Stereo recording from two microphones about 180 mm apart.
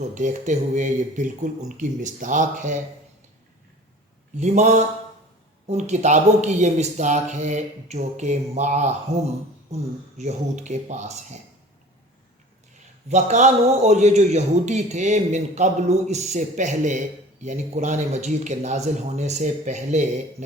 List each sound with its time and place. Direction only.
0.0 s speech: 40° right (ahead or behind)
4.4 s a man's voice: 40° right (ahead or behind)
9.1 s a man's voice: 15° right (ahead or behind)
10.2 s a man's voice: 40° right (ahead or behind)
13.1 s a man's voice: 40° right (ahead or behind)